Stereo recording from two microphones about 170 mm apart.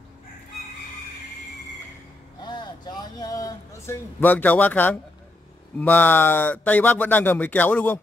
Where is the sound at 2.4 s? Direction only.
25° left (ahead or behind); by 5.0 s 10° left (ahead or behind).